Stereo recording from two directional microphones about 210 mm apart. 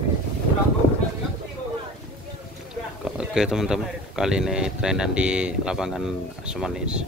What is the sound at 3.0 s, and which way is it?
Speech, 5° right (ahead or behind).